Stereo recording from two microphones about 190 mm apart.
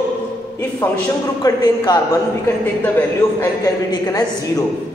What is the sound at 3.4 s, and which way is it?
Speech, 20° left (ahead or behind).